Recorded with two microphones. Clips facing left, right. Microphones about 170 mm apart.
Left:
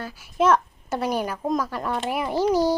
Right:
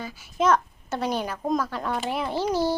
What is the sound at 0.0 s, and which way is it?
A child's voice, 5° left (ahead or behind).